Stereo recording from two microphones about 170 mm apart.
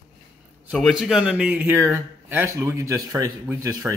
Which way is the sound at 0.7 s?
Centre (ahead or behind).